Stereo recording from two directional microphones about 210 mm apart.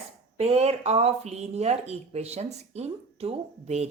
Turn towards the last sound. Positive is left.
turn(degrees=-30)  # may be behind; listen again after turning